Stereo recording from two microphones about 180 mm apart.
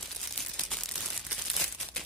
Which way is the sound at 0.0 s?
Centre (ahead or behind).